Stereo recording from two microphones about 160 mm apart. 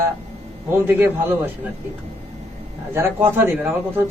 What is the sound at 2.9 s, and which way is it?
A man's voice, 15° right (ahead or behind).